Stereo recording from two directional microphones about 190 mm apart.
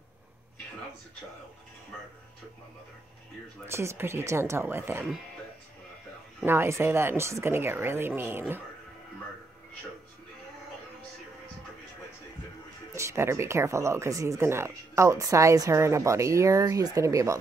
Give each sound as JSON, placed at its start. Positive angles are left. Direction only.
{"t": 3.6, "sound": "speech", "side_deg": -15}
{"t": 6.4, "sound": "speech", "side_deg": -10}
{"t": 12.9, "sound": "speech", "side_deg": -15}